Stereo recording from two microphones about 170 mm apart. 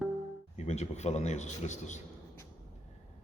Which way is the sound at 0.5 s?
40° left (ahead or behind).